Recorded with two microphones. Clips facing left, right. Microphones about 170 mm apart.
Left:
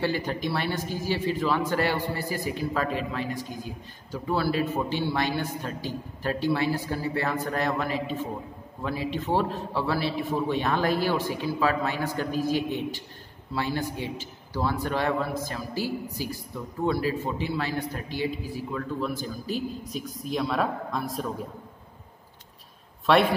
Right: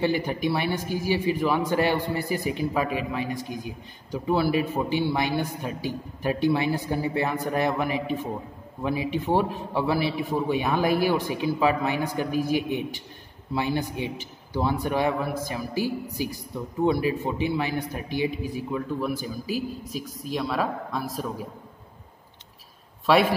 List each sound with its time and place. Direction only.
0.0 s a man's voice: 15° right (ahead or behind)
23.1 s a man's voice: 5° right (ahead or behind)